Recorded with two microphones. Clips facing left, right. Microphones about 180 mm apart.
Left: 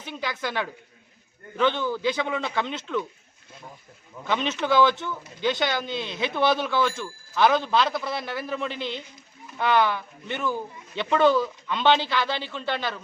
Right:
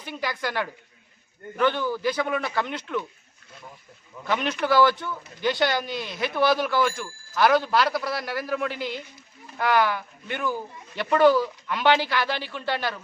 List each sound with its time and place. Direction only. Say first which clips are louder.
0.0 s speech: right 1 dB; 10° right (ahead or behind)
2.1 s speech: right 1 dB; 5° right (ahead or behind)
4.3 s speech: right 1 dB; 10° right (ahead or behind)